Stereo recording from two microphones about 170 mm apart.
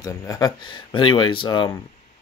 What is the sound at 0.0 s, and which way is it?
Speech, 20° left (ahead or behind).